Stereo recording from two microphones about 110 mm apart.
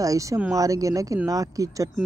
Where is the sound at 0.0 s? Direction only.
30° right (ahead or behind).